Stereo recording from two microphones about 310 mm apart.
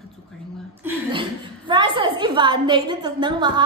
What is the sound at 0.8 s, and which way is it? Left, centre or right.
A woman's voice, centre.